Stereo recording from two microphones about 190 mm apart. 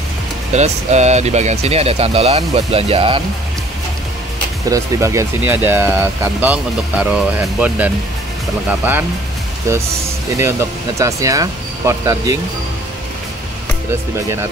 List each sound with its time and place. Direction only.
0.5 s speech: 35° right (ahead or behind)
4.6 s speech: 15° right (ahead or behind)